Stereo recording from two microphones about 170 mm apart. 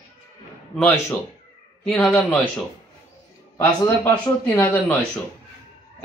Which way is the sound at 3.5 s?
20° left (ahead or behind).